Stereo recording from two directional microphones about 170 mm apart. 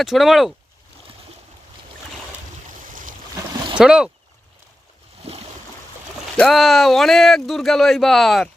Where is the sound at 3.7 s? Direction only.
5° right (ahead or behind).